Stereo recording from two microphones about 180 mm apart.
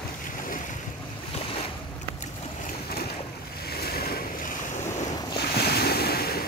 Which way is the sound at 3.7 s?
60° left (ahead or behind).